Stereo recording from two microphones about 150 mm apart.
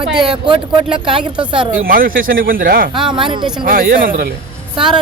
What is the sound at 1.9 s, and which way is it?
Speech, 70° right (ahead or behind).